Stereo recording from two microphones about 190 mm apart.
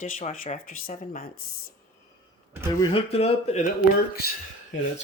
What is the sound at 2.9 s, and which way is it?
Speech, 30° left (ahead or behind).